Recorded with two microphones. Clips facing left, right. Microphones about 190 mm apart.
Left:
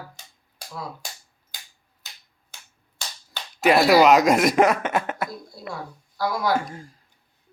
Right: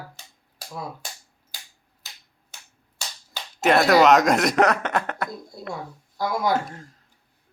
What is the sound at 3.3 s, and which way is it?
Speech, centre (ahead or behind).